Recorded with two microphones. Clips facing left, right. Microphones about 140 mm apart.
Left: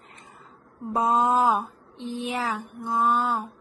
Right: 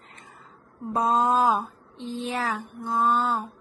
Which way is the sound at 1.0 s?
20° left (ahead or behind).